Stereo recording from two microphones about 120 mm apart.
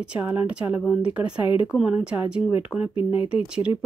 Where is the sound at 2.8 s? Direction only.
45° left (ahead or behind).